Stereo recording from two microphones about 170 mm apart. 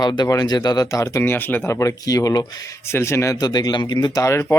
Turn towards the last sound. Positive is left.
turn(degrees=15)  # may be behind; listen again after turning